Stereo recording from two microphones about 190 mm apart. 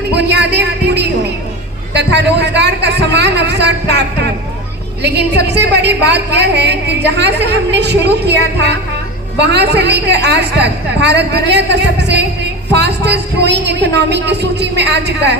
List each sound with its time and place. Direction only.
0.1 s a woman's voice: 65° right (ahead or behind)
5.0 s a woman's voice: 60° right (ahead or behind)